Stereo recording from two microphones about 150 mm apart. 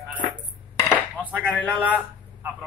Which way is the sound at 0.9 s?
10° right (ahead or behind).